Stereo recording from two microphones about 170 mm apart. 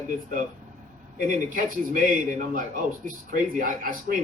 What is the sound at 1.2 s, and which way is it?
A man's voice, 50° right (ahead or behind).